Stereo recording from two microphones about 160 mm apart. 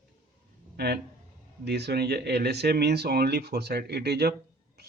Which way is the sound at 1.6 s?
90° right.